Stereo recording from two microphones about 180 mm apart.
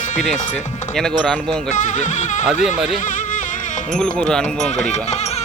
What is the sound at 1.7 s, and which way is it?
Speech, 45° left (ahead or behind).